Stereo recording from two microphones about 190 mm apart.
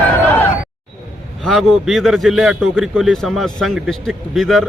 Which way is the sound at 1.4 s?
Centre (ahead or behind).